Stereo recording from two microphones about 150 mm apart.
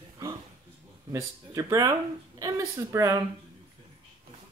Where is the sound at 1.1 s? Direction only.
20° right (ahead or behind).